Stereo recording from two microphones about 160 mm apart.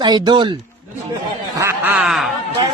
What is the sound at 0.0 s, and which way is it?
Speech, 30° right (ahead or behind).